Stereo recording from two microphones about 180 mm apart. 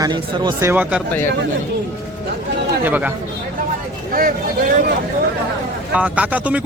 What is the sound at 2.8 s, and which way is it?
Speech, 10° right (ahead or behind).